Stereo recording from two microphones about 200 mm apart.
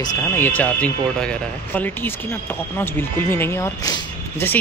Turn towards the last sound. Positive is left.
turn(degrees=10)  # may be behind; listen again after turning